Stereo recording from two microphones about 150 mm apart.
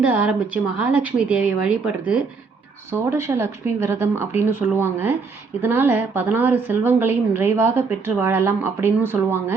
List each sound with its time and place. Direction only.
0.0 s a woman's voice: 10° right (ahead or behind)